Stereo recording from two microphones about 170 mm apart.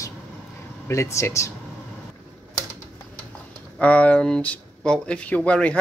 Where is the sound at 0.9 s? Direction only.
15° left (ahead or behind).